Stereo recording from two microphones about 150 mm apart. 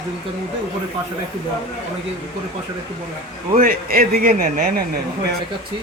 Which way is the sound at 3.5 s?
70° right (ahead or behind).